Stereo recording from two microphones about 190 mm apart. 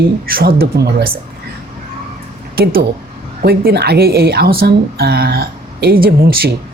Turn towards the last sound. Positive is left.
turn(degrees=-50)  # may be behind; listen again after turning